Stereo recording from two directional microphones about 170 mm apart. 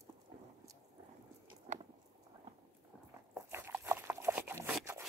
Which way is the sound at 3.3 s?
15° right (ahead or behind).